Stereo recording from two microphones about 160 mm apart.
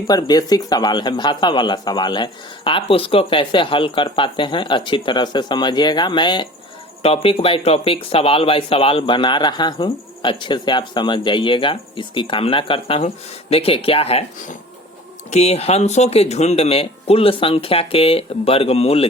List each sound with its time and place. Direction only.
0.1 s speech: 25° left (ahead or behind)